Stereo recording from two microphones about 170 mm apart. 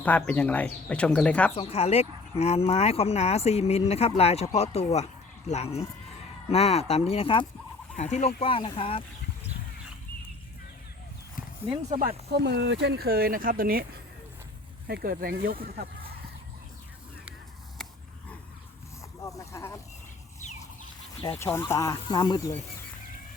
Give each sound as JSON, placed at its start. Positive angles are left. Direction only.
{"t": 0.0, "sound": "speech", "side_deg": 10}
{"t": 1.5, "sound": "speech", "side_deg": 35}
{"t": 7.9, "sound": "speech", "side_deg": 45}
{"t": 8.4, "sound": "speech", "side_deg": 30}
{"t": 11.4, "sound": "a sound", "side_deg": 55}
{"t": 11.9, "sound": "speech", "side_deg": -55}
{"t": 14.8, "sound": "speech", "side_deg": -65}
{"t": 19.2, "sound": "a sound", "side_deg": 20}
{"t": 21.3, "sound": "speech", "side_deg": 15}